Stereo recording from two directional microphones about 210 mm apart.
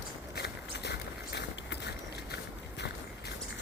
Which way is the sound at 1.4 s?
55° left (ahead or behind).